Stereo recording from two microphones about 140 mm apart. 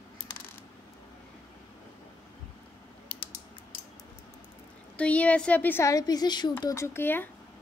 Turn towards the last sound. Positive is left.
turn(degrees=15)  # may be behind; listen again after turning